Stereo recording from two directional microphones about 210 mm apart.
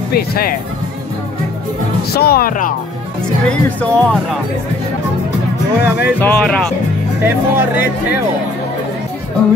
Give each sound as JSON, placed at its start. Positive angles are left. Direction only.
{"t": 0.1, "sound": "speech", "side_deg": 45}
{"t": 2.1, "sound": "speech", "side_deg": 45}
{"t": 3.4, "sound": "speech", "side_deg": 5}
{"t": 5.8, "sound": "speech", "side_deg": -10}
{"t": 6.1, "sound": "speech", "side_deg": 5}
{"t": 7.2, "sound": "speech", "side_deg": -10}